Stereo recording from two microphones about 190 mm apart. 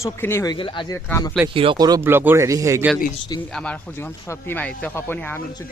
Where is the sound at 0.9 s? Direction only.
15° left (ahead or behind).